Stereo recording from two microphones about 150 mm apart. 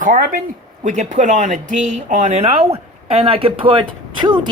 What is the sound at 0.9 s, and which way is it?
Speech, 55° right (ahead or behind).